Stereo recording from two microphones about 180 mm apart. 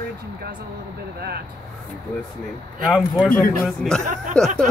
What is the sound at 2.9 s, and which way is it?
Speech, 5° left (ahead or behind).